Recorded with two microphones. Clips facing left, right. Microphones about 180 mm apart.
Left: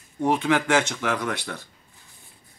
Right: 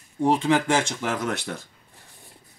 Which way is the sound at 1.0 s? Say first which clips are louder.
Left 1 dB; 45° right (ahead or behind).